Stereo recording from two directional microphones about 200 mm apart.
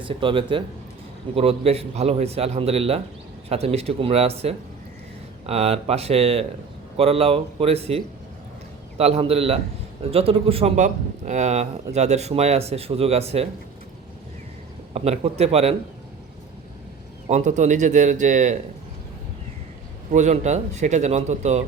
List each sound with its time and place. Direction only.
0.0 s a man's voice: 25° right (ahead or behind)
14.9 s a man's voice: 30° right (ahead or behind)
17.2 s a man's voice: 35° right (ahead or behind)
20.1 s a man's voice: 35° right (ahead or behind)